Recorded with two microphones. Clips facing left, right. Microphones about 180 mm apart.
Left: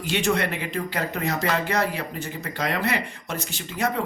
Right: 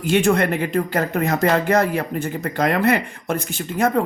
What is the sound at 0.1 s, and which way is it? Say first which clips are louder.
Speech: right 7 dB; 50° right (ahead or behind).